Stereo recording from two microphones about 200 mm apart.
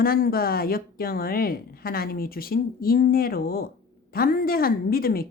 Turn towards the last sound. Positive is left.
turn(degrees=50)  # may be behind; listen again after turning